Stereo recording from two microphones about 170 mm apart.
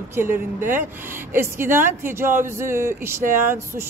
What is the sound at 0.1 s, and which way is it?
Speech, 15° right (ahead or behind).